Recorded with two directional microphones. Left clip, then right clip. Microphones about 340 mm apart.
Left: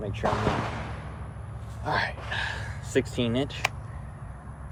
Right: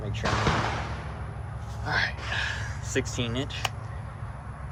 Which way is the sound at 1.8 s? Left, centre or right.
Left.